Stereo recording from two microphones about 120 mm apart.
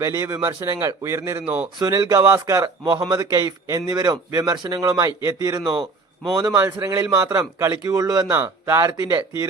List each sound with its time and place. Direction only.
0.0 s a man's voice: 25° right (ahead or behind)
1.8 s a man's voice: 30° right (ahead or behind)
8.3 s a man's voice: 20° right (ahead or behind)